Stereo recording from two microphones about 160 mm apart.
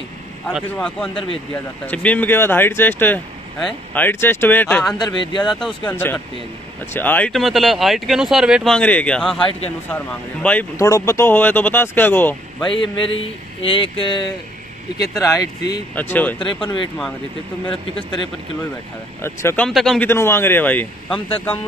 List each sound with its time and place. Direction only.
0.7 s speech: 5° left (ahead or behind)
1.1 s speech: 35° left (ahead or behind)
1.5 s speech: 10° left (ahead or behind)
4.9 s speech: 25° left (ahead or behind)
5.4 s speech: 5° left (ahead or behind)
8.7 s speech: 10° left (ahead or behind)
12.6 s speech: 30° left (ahead or behind)
15.9 s speech: 10° left (ahead or behind)
16.6 s speech: 30° left (ahead or behind)
19.2 s speech: 15° left (ahead or behind)
19.7 s speech: centre (ahead or behind)
20.1 s speech: 15° left (ahead or behind)